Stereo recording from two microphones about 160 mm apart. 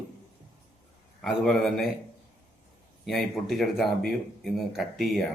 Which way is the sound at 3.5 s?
Centre (ahead or behind).